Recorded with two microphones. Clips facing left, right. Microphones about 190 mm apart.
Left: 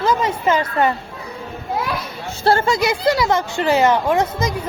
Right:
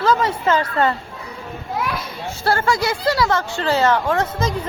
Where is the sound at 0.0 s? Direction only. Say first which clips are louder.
Even; 15° left (ahead or behind).